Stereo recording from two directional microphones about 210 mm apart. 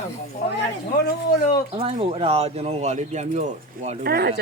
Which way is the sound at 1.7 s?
25° right (ahead or behind).